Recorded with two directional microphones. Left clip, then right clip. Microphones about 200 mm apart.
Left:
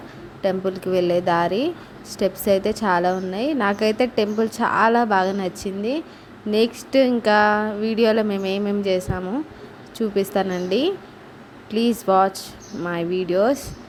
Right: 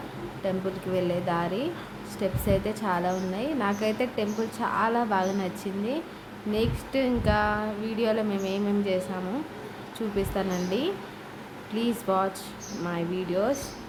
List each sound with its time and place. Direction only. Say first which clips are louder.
0.4 s a woman's voice: left 8 dB; 35° left (ahead or behind)
10.2 s a woman's voice: left 7 dB; 35° left (ahead or behind)